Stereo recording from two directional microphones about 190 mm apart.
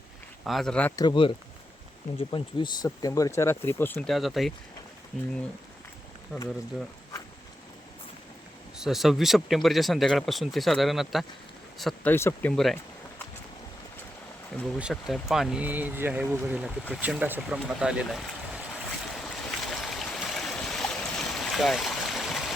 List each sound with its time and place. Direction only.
0.4 s speech: centre (ahead or behind)
0.9 s speech: 25° left (ahead or behind)
4.1 s speech: centre (ahead or behind)
6.3 s speech: centre (ahead or behind)
8.8 s speech: centre (ahead or behind)
12.1 s speech: 10° left (ahead or behind)
14.8 s speech: 5° right (ahead or behind)
17.0 s a sound: 5° right (ahead or behind)